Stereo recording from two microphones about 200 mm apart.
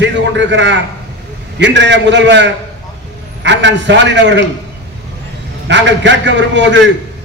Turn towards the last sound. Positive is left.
turn(degrees=-65)  # may be behind; listen again after turning